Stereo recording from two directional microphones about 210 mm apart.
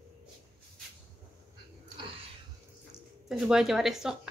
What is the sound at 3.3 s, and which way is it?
Speech, 5° right (ahead or behind).